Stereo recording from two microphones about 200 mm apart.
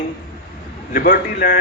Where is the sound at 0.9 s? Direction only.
45° left (ahead or behind).